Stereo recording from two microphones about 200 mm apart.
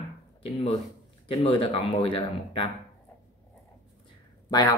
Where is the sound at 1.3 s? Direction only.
25° left (ahead or behind).